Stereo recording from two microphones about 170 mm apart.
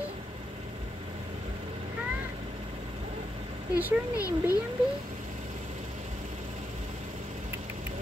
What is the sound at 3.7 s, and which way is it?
Speech, 20° left (ahead or behind).